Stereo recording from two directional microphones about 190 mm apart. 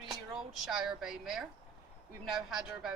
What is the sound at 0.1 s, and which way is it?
Speech, centre (ahead or behind).